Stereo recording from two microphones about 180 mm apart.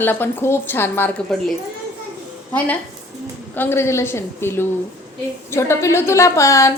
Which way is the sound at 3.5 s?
10° left (ahead or behind).